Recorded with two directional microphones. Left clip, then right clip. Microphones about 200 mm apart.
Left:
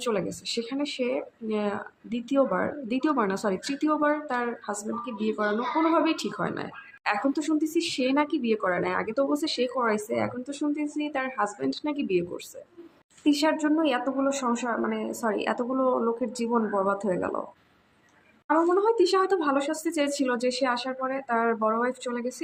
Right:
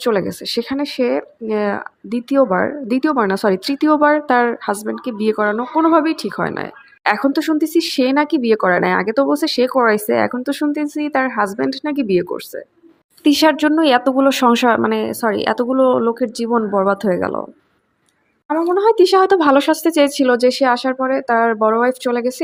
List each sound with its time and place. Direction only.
0.0 s speech: 40° right (ahead or behind)
13.2 s speech: 45° right (ahead or behind)
18.7 s speech: 40° right (ahead or behind)